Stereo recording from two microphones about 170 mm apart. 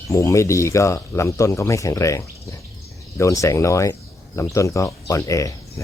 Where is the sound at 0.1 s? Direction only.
15° left (ahead or behind).